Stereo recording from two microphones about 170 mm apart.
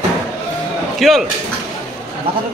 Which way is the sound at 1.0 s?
Centre (ahead or behind).